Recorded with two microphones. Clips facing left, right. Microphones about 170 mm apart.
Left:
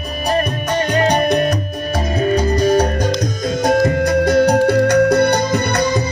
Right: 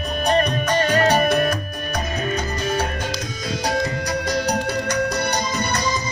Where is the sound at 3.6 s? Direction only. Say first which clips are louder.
Left 10 dB; 50° left (ahead or behind).